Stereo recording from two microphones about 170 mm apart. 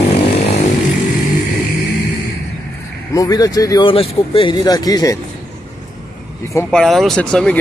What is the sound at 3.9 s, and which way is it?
Speech, 30° left (ahead or behind).